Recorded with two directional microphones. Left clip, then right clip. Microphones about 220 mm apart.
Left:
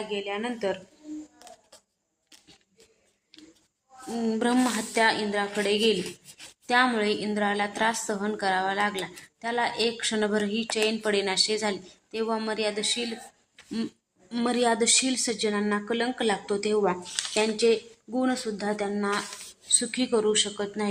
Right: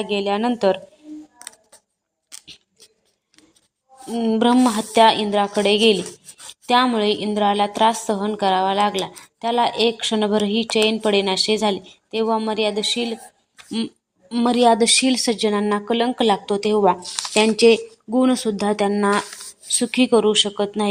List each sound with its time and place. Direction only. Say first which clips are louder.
0.1 s speech: right 12 dB; 40° right (ahead or behind)
2.3 s scissors: right 13 dB; 20° right (ahead or behind)
4.1 s a woman's voice: right 8 dB; 20° right (ahead or behind)
14.3 s a woman's voice: right 9 dB; 20° right (ahead or behind)